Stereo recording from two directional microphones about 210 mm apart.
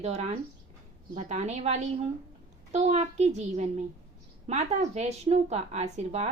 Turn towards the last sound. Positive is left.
turn(degrees=-35)  # may be behind; listen again after turning